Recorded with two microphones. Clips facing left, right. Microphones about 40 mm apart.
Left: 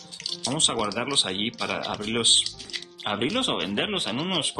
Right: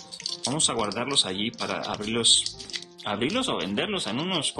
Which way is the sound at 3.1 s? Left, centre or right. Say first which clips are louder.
Left 1 dB; left.